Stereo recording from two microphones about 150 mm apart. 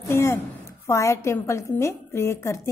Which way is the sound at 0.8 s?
20° left (ahead or behind).